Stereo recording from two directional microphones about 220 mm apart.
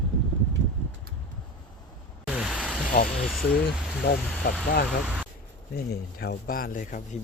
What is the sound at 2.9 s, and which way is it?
Speech, 40° left (ahead or behind).